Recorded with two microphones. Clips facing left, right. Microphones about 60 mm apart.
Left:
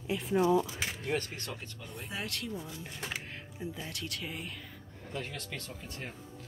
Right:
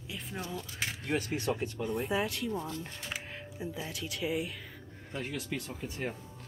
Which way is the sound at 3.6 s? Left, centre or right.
Centre.